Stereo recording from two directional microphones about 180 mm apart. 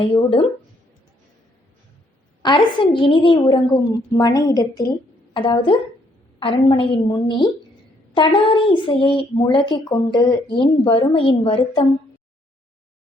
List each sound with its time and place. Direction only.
0.1 s a woman's voice: 30° left (ahead or behind)
2.4 s a woman's voice: 25° left (ahead or behind)